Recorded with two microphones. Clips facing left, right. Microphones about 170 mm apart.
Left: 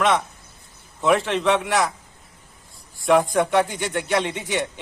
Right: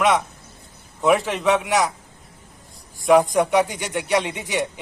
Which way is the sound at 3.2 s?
10° right (ahead or behind).